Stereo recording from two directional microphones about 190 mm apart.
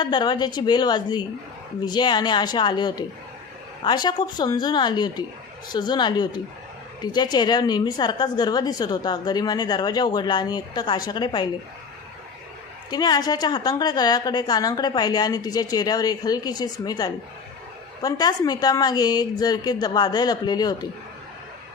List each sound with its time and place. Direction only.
0.0 s a woman's voice: 25° left (ahead or behind)
12.9 s a woman's voice: 20° left (ahead or behind)